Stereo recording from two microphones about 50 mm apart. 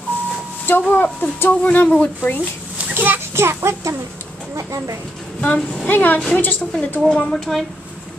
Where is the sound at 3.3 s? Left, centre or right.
Right.